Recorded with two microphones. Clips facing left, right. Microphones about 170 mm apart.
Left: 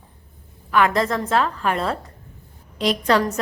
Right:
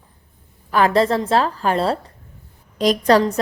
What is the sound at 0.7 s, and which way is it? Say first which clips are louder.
A woman's voice: right 3 dB; 35° right (ahead or behind).